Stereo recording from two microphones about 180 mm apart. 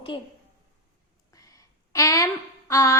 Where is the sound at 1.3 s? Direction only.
20° left (ahead or behind).